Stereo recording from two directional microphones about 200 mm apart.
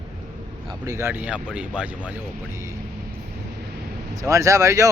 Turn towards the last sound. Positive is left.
turn(degrees=-15)  # may be behind; listen again after turning